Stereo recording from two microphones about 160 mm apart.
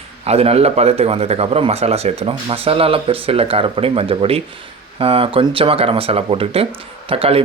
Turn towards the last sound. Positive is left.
turn(degrees=-35)  # may be behind; listen again after turning